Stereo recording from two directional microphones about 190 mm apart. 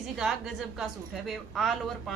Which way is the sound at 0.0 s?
Centre (ahead or behind).